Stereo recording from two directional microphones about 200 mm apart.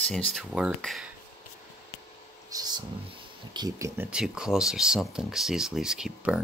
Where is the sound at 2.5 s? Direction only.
20° right (ahead or behind); by 6.4 s 5° right (ahead or behind).